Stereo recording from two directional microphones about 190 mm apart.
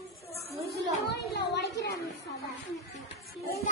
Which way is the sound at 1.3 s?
65° left (ahead or behind).